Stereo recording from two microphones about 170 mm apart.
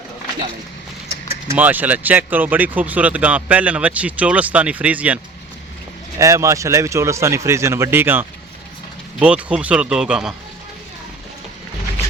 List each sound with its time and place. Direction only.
1.5 s speech: 10° right (ahead or behind)